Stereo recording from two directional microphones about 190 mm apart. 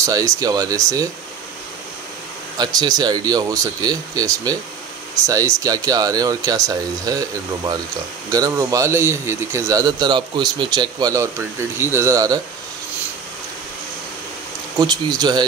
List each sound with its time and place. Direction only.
0.0 s a man's voice: 15° right (ahead or behind)
2.6 s a man's voice: 20° right (ahead or behind)
14.8 s speech: 20° right (ahead or behind)